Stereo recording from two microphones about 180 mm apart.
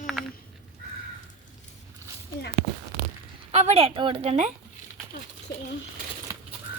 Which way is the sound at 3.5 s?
35° right (ahead or behind).